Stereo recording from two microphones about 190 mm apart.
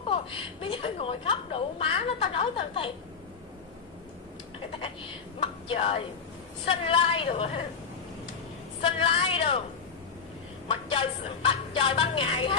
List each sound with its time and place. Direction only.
0.0 s a woman's voice: 30° left (ahead or behind)
4.7 s a woman's voice: 30° left (ahead or behind)
8.8 s a woman's voice: 30° left (ahead or behind)
10.7 s a woman's voice: 30° left (ahead or behind)